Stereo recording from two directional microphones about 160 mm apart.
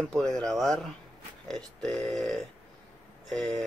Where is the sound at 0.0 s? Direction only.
5° left (ahead or behind).